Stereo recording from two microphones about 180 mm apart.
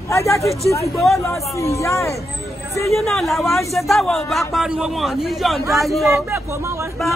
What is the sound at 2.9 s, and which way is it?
A man's voice, centre (ahead or behind).